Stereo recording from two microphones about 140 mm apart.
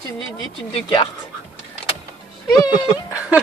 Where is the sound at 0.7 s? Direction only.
35° left (ahead or behind).